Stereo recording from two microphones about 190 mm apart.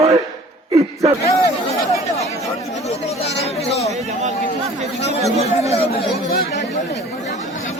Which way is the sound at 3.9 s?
35° right (ahead or behind).